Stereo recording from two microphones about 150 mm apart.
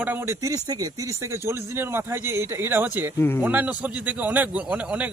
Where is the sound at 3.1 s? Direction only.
15° left (ahead or behind).